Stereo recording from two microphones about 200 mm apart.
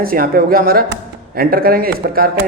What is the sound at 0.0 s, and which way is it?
A man's voice, 45° right (ahead or behind).